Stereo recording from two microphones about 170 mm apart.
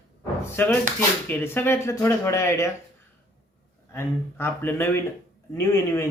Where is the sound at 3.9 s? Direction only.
15° left (ahead or behind).